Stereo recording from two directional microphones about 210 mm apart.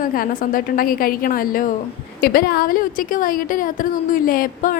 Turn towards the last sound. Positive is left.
turn(degrees=40)  # may be behind; listen again after turning